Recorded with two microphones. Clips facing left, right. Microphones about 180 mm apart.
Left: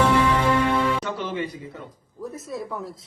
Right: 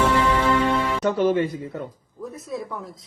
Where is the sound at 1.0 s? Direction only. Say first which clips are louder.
Right 8 dB; 45° right (ahead or behind).